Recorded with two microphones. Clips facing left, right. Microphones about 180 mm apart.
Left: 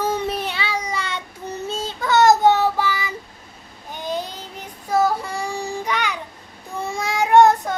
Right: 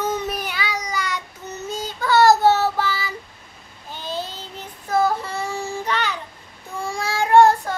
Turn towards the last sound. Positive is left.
turn(degrees=20)  # may be behind; listen again after turning